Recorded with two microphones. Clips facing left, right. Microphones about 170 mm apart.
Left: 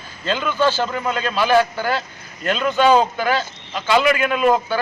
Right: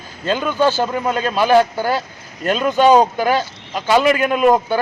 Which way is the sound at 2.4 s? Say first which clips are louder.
Right 3 dB; 45° right (ahead or behind).